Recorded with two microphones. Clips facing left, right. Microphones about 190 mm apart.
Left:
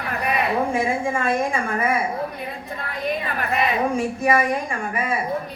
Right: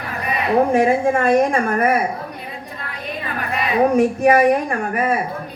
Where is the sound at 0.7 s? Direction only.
70° right (ahead or behind).